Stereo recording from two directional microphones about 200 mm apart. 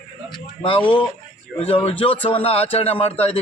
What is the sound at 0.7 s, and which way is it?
A man's voice, 25° left (ahead or behind).